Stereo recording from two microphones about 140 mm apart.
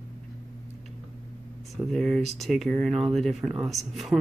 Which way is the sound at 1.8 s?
Centre (ahead or behind).